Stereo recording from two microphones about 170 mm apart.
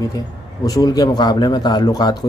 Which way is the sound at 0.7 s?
20° left (ahead or behind).